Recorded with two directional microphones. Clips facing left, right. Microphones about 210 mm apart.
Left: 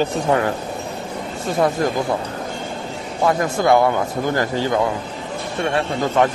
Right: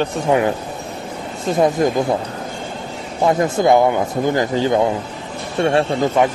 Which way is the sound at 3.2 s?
20° right (ahead or behind).